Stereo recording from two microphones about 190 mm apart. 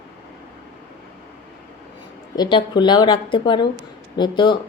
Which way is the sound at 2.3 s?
25° left (ahead or behind).